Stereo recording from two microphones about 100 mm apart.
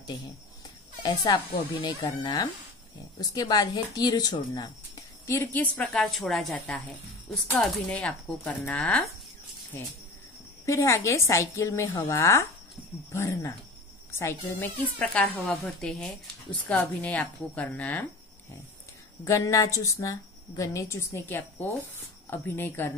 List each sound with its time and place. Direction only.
1.0 s a woman's voice: 40° left (ahead or behind)
5.5 s a woman's voice: 15° left (ahead or behind)
6.1 s a woman's voice: centre (ahead or behind)
10.6 s a woman's voice: 30° left (ahead or behind)
15.0 s a woman's voice: 10° left (ahead or behind)
19.2 s a woman's voice: 30° left (ahead or behind)